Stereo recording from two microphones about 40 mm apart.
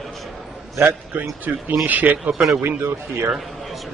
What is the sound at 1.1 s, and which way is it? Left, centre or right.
A man's voice, right.